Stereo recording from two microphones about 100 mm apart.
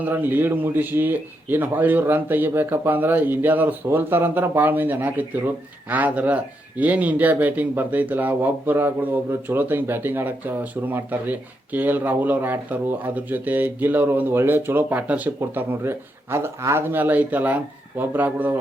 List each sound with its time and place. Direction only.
0.0 s speech: 20° right (ahead or behind)
15.4 s speech: 25° right (ahead or behind)